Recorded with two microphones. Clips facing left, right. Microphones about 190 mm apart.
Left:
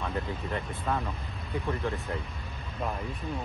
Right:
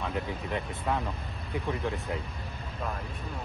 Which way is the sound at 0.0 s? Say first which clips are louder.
Even; 15° right (ahead or behind).